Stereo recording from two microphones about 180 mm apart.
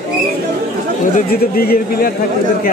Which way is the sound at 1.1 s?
55° left (ahead or behind).